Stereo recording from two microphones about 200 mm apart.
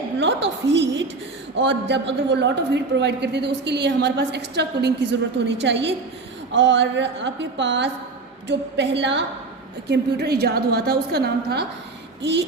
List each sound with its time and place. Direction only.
0.2 s a man's voice: 60° right (ahead or behind)